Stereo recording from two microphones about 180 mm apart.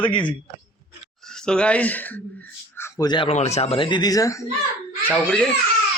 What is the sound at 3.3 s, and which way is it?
Speech, 40° left (ahead or behind).